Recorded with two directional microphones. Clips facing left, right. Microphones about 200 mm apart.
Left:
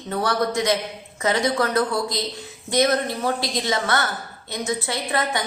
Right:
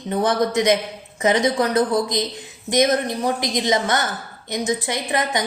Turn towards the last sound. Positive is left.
turn(degrees=-15)  # may be behind; listen again after turning